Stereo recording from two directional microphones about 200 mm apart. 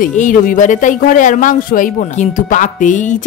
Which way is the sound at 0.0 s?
40° left (ahead or behind).